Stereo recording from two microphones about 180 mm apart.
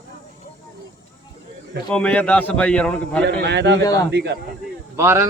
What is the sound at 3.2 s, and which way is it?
A man's voice, 65° right (ahead or behind).